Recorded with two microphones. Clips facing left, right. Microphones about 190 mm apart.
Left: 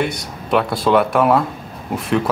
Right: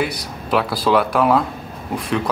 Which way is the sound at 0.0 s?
Centre (ahead or behind).